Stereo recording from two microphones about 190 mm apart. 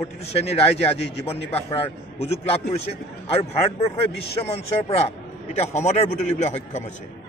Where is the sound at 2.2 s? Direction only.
30° left (ahead or behind).